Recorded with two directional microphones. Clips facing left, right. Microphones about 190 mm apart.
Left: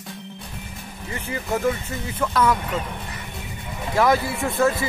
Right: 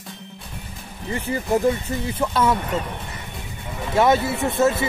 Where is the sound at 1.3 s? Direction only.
30° right (ahead or behind).